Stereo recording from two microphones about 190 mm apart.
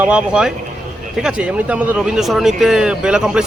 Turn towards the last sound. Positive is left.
turn(degrees=-5)  # may be behind; listen again after turning